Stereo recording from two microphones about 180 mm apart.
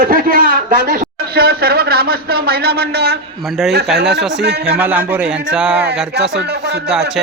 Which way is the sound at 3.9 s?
65° right (ahead or behind).